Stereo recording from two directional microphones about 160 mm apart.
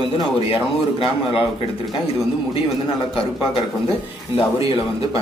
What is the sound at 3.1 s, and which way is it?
A man's voice, 35° left (ahead or behind).